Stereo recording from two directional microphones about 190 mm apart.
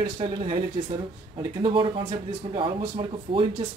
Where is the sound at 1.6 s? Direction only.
25° right (ahead or behind).